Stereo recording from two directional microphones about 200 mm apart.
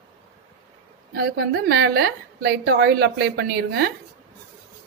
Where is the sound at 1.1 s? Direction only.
55° right (ahead or behind).